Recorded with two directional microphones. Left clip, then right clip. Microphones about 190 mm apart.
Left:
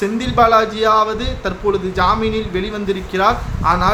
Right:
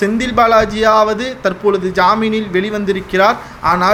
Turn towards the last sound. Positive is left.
turn(degrees=-30)  # may be behind; listen again after turning